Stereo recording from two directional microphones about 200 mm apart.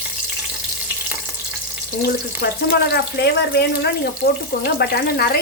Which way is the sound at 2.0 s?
50° left (ahead or behind).